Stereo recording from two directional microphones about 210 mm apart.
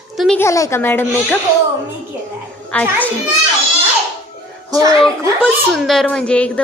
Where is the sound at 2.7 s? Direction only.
5° left (ahead or behind).